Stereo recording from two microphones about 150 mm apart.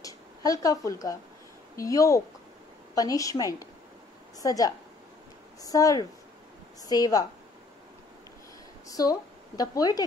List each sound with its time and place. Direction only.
0.0 s a sound: 25° left (ahead or behind)
1.8 s a woman's voice: 20° left (ahead or behind)
8.8 s speech: 25° left (ahead or behind)